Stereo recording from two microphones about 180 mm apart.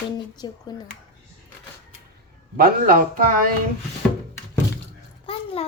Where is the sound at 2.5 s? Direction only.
50° right (ahead or behind).